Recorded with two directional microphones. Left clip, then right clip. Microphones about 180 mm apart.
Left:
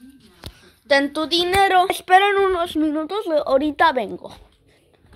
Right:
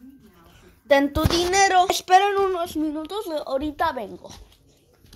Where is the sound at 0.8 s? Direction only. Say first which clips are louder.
Left 1 dB; 5° right (ahead or behind).